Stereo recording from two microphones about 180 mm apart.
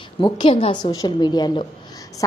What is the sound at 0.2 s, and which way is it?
A woman's voice, 25° left (ahead or behind).